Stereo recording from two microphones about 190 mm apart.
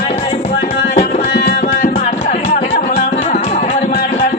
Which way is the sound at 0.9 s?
35° left (ahead or behind).